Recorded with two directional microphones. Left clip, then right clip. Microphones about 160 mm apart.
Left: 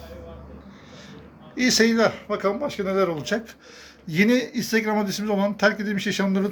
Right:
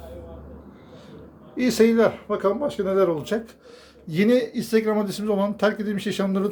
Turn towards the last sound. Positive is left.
turn(degrees=-15)  # may be behind; listen again after turning